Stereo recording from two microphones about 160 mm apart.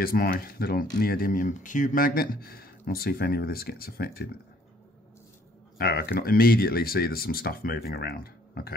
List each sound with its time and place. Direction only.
0.0 s speech: 65° left (ahead or behind)
5.8 s speech: 80° left